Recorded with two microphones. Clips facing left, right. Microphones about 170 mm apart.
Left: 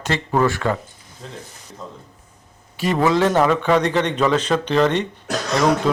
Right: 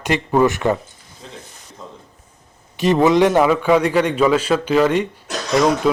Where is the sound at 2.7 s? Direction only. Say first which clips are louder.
Right 4 dB; 20° right (ahead or behind).